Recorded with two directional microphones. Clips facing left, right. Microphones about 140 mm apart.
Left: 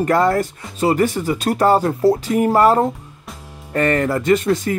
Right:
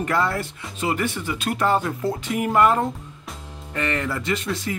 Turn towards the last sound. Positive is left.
turn(degrees=50)  # may be behind; listen again after turning